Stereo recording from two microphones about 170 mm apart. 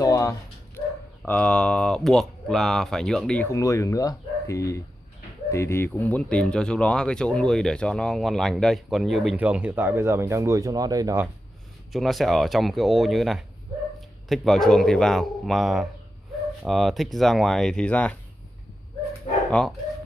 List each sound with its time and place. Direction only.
0.0 s dog: 20° left (ahead or behind)
1.2 s speech: 10° left (ahead or behind); by 11.2 s 20° right (ahead or behind)
11.9 s speech: centre (ahead or behind)